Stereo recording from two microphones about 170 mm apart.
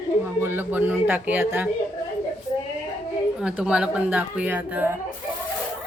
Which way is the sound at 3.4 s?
5° right (ahead or behind).